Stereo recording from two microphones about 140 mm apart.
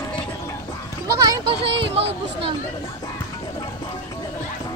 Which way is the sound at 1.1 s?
25° right (ahead or behind).